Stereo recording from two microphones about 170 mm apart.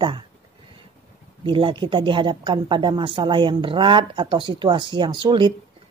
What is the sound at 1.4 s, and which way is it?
Speech, 30° right (ahead or behind).